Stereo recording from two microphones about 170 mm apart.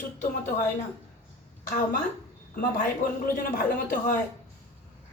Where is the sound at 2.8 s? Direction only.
55° left (ahead or behind).